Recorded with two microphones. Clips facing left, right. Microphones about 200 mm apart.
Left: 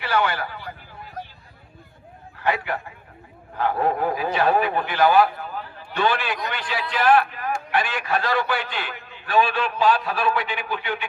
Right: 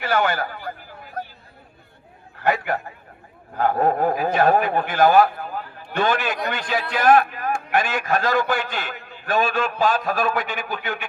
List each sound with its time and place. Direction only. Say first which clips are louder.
0.0 s a man's voice: right 2 dB; 45° right (ahead or behind)
2.4 s a sound: right 3 dB; 45° right (ahead or behind)
3.6 s a man's voice: right 3 dB; 45° right (ahead or behind)